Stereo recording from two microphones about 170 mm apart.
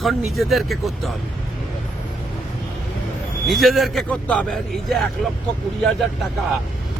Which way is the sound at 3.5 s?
Centre (ahead or behind).